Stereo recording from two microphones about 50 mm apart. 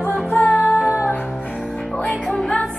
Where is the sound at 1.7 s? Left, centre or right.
Centre.